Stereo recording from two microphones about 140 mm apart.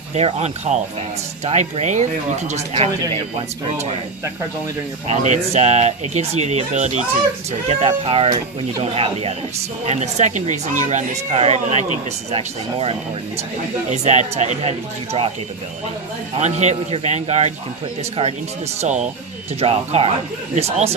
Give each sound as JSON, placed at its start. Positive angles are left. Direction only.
{"t": 0.1, "sound": "speech", "side_deg": -50}
{"t": 5.0, "sound": "speech", "side_deg": -55}
{"t": 7.7, "sound": "speech", "side_deg": -45}
{"t": 16.4, "sound": "speech", "side_deg": -55}
{"t": 18.8, "sound": "speech", "side_deg": -55}
{"t": 19.5, "sound": "speech", "side_deg": -45}